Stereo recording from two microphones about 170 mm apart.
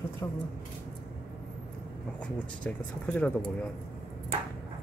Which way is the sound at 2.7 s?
10° left (ahead or behind).